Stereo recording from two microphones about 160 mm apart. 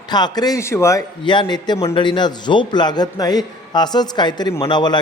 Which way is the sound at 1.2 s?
30° left (ahead or behind).